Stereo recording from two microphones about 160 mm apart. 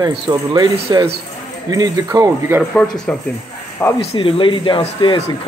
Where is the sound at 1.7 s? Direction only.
20° right (ahead or behind).